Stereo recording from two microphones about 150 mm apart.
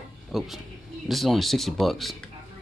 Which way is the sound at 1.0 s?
Centre (ahead or behind).